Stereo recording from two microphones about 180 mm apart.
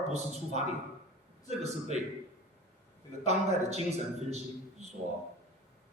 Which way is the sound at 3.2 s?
35° right (ahead or behind).